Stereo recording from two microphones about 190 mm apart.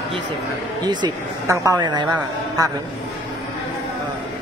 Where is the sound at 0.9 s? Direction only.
20° right (ahead or behind).